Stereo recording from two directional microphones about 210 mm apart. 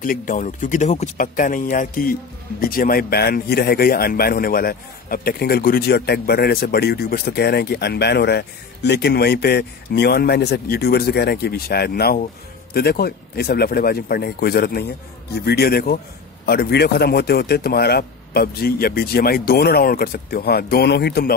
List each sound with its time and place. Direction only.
0.0 s speech: 40° left (ahead or behind)